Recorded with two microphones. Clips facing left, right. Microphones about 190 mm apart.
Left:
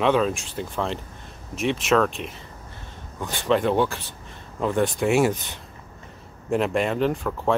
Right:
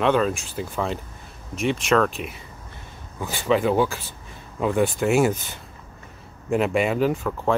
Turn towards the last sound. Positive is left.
turn(degrees=0)  # may be behind; listen again after turning